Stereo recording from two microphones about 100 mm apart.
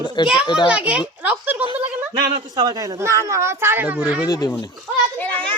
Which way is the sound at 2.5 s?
40° right (ahead or behind).